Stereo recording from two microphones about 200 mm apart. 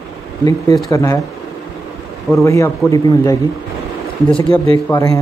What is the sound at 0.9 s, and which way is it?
Speech, 15° left (ahead or behind).